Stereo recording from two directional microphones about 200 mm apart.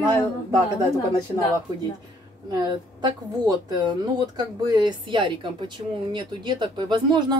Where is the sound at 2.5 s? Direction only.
20° right (ahead or behind).